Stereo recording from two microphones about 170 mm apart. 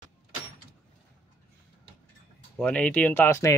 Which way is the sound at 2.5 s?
5° left (ahead or behind).